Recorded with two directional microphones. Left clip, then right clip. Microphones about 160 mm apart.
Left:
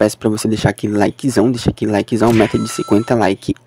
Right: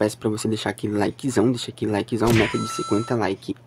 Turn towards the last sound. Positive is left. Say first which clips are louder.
# left 9 dB
turn(degrees=45)  # may be behind; listen again after turning